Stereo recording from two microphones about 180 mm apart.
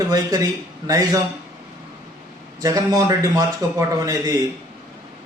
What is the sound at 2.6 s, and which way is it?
A man's voice, 20° right (ahead or behind).